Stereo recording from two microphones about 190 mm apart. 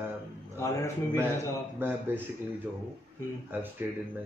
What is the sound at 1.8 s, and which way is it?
Speech, 10° right (ahead or behind).